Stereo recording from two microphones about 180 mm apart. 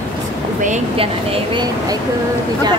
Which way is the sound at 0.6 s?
40° right (ahead or behind).